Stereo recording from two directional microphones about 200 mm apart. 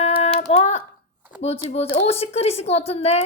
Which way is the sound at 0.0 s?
30° left (ahead or behind).